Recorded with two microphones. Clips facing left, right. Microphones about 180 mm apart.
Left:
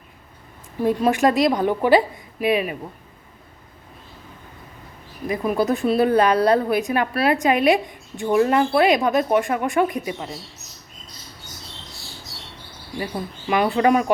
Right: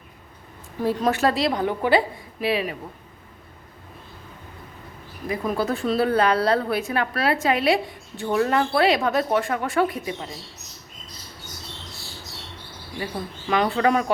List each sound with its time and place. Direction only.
0.8 s a woman's voice: 15° left (ahead or behind)
5.5 s a woman's voice: 15° left (ahead or behind)
13.5 s a woman's voice: 20° left (ahead or behind)